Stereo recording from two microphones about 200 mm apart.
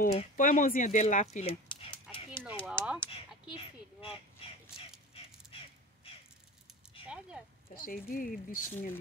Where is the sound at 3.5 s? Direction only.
25° left (ahead or behind).